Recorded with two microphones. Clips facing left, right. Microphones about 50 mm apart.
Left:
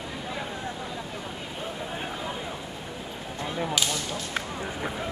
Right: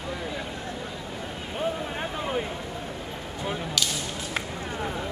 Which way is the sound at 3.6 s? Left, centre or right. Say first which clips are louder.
Left 4 dB; centre.